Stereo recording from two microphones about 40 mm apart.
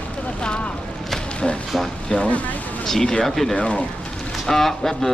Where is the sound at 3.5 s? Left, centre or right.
Left.